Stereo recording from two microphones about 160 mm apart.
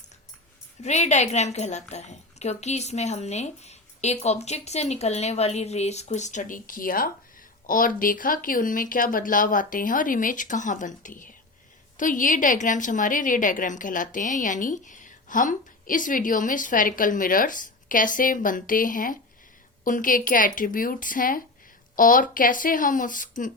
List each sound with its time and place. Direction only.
0.8 s a woman's voice: 45° left (ahead or behind)